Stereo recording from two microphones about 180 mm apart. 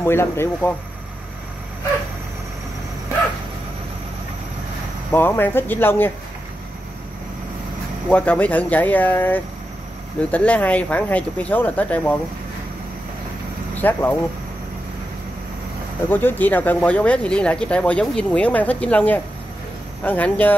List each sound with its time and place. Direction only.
0.0 s speech: 15° left (ahead or behind)
5.1 s speech: 10° left (ahead or behind)
8.1 s speech: 10° left (ahead or behind)
13.7 s speech: 10° left (ahead or behind)
16.1 s speech: 10° left (ahead or behind)